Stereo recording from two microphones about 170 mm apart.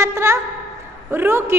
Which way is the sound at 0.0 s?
15° right (ahead or behind).